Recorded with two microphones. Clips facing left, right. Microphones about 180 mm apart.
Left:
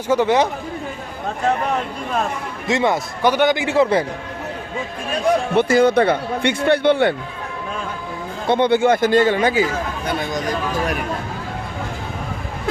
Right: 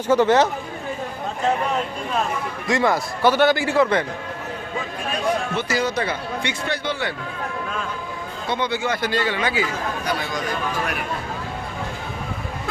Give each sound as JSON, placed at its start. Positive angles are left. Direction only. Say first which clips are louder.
{"t": 0.1, "sound": "speech", "louder": "even", "side_deg": 10}
{"t": 2.6, "sound": "a man's voice", "louder": "left 2 dB", "side_deg": 25}
{"t": 5.5, "sound": "speech", "louder": "left 9 dB", "side_deg": 55}
{"t": 8.4, "sound": "speech", "louder": "left 9 dB", "side_deg": 55}